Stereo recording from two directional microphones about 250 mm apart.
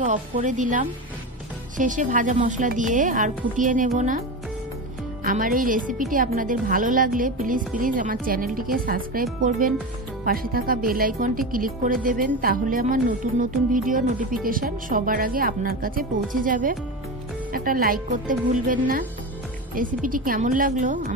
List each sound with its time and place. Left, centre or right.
0.0 s a woman's voice: right
5.2 s a woman's voice: right